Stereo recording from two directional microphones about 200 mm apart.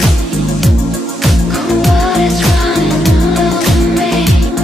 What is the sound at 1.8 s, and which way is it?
Music, centre (ahead or behind).